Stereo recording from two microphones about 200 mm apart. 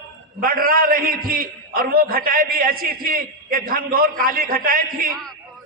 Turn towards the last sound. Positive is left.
turn(degrees=-45)  # may be behind; listen again after turning